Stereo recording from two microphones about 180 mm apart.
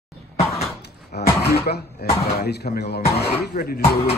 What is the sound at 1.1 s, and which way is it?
Speech, 65° left (ahead or behind).